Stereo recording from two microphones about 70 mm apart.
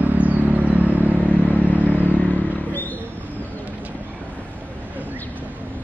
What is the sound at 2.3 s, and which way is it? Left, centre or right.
Vehicle, left.